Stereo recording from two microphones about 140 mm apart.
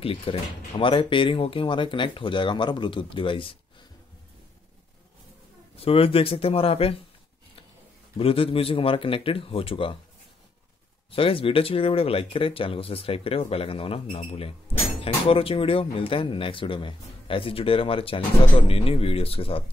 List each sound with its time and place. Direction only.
0.0 s speech: 40° left (ahead or behind)
5.8 s speech: 40° left (ahead or behind)
8.2 s speech: 40° left (ahead or behind)
11.1 s speech: 40° left (ahead or behind)